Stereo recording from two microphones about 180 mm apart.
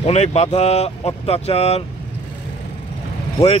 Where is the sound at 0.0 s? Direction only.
35° left (ahead or behind).